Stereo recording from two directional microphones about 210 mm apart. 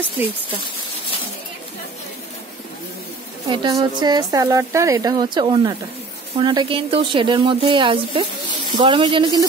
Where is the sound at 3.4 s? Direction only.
20° right (ahead or behind).